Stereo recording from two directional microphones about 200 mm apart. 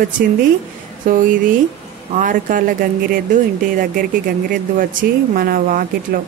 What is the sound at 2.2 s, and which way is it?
A woman's voice, 40° right (ahead or behind).